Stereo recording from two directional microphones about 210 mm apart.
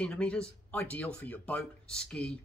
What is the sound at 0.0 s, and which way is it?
Speech, 5° left (ahead or behind).